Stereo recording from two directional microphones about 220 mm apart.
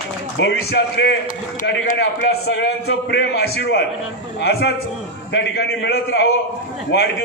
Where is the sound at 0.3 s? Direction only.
50° left (ahead or behind).